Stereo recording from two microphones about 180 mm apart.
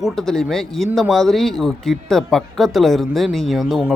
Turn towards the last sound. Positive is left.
turn(degrees=0)  # may be behind; listen again after turning